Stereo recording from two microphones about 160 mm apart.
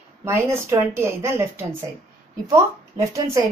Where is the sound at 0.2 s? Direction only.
15° right (ahead or behind).